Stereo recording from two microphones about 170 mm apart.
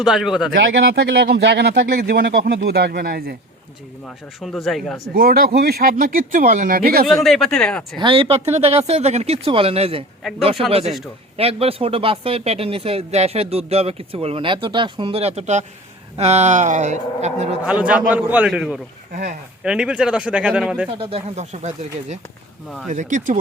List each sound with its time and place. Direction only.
0.0 s speech: centre (ahead or behind)
0.5 s speech: 85° right; by 3.3 s 65° right (ahead or behind)
4.4 s speech: centre (ahead or behind)
5.1 s speech: 60° right (ahead or behind)
7.1 s speech: centre (ahead or behind)
7.9 s speech: 30° right (ahead or behind)
17.7 s a man's voice: 5° right (ahead or behind)
21.0 s speech: 35° right (ahead or behind)
22.9 s speech: 45° right (ahead or behind)